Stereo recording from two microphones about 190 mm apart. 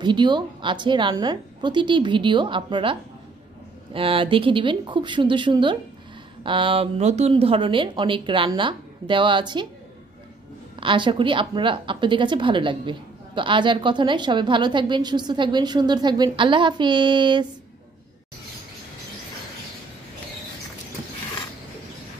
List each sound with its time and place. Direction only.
0.0 s a woman's voice: 25° right (ahead or behind)
10.8 s a woman's voice: 25° right (ahead or behind)